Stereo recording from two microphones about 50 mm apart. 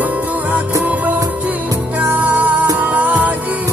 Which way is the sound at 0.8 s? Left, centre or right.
Right.